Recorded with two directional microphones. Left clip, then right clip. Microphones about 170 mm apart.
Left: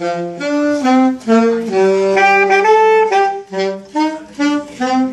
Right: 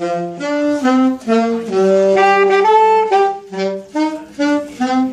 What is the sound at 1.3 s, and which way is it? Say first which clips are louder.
Saxophone: left 4 dB; 25° right (ahead or behind).